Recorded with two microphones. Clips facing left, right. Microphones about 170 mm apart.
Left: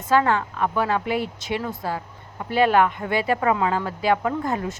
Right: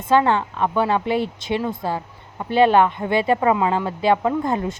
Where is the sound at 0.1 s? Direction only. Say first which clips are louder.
Right 3 dB; 25° right (ahead or behind).